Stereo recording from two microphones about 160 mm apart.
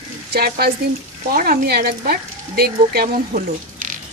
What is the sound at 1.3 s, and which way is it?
Speech, 65° right (ahead or behind).